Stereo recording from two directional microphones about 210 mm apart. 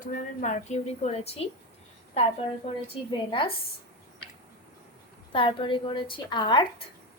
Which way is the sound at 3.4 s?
25° left (ahead or behind).